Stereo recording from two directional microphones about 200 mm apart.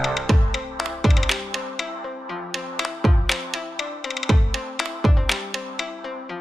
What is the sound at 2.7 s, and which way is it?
Music, centre (ahead or behind).